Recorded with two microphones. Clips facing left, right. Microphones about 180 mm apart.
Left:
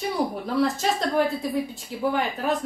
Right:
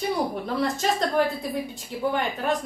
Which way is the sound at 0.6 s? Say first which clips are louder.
Left 2 dB; centre (ahead or behind).